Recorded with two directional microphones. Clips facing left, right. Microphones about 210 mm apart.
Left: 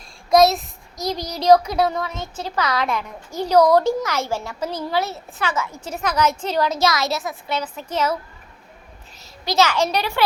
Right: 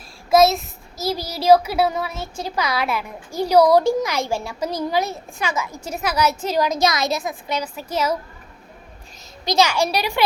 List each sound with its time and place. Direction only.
0.3 s a child's voice: centre (ahead or behind)
9.4 s a child's voice: 15° right (ahead or behind)